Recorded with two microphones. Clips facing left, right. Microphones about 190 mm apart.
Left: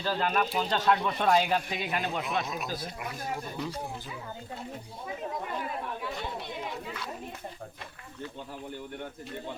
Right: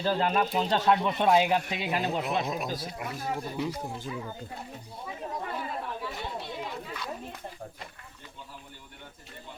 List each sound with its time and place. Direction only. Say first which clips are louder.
0.0 s speech: right 2 dB; 25° right (ahead or behind)